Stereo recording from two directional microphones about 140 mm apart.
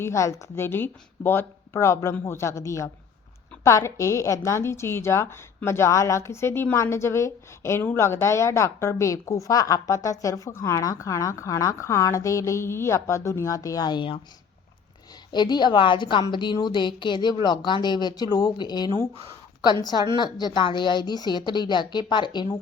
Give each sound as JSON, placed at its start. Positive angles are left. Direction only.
{"t": 0.0, "sound": "a woman's voice", "side_deg": 20}
{"t": 15.3, "sound": "a woman's voice", "side_deg": 30}